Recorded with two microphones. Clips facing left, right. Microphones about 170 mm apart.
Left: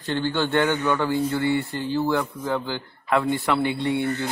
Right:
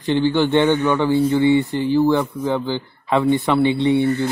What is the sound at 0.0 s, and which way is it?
A man's voice, 15° right (ahead or behind).